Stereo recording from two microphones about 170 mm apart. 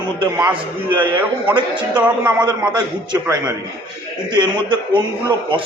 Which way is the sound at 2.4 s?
25° right (ahead or behind).